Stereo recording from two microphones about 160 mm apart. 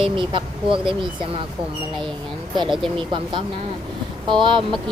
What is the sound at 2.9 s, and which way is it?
Speech, 30° right (ahead or behind).